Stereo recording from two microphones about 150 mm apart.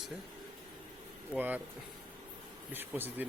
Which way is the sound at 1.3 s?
10° right (ahead or behind).